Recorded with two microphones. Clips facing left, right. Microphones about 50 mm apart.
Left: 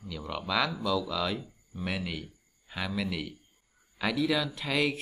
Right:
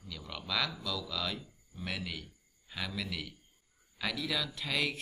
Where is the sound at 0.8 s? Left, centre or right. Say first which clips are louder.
Left 8 dB; centre.